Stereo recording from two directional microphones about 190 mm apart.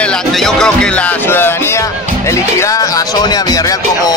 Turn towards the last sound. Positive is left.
turn(degrees=20)  # may be behind; listen again after turning